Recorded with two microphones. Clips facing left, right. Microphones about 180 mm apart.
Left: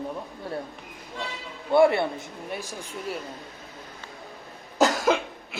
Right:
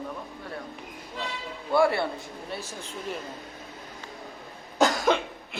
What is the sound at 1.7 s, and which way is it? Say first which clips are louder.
A man's voice: left 4 dB; 20° left (ahead or behind).